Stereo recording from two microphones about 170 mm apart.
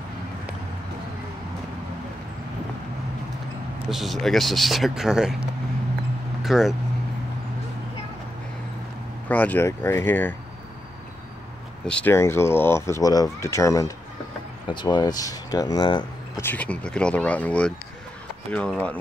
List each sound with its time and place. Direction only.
3.9 s speech: centre (ahead or behind)
6.4 s speech: centre (ahead or behind)
9.3 s speech: 10° left (ahead or behind)
11.8 s speech: 5° left (ahead or behind); by 16.1 s 25° left (ahead or behind)
16.3 s speech: 10° left (ahead or behind)